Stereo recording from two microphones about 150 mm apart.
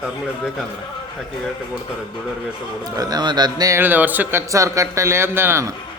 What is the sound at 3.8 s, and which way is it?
Speech, 10° right (ahead or behind).